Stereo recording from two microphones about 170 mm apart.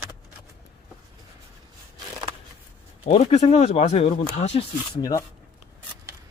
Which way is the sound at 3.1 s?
40° left (ahead or behind).